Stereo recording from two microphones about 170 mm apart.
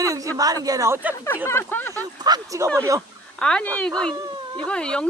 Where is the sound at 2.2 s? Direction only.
20° right (ahead or behind).